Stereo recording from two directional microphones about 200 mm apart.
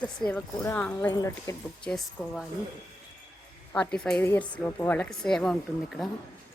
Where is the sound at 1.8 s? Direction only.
5° left (ahead or behind).